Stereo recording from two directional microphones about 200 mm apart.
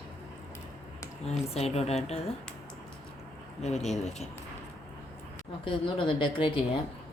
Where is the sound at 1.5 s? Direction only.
30° left (ahead or behind).